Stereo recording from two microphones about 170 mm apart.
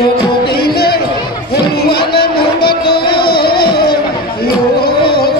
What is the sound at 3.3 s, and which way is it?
Music, 65° left (ahead or behind).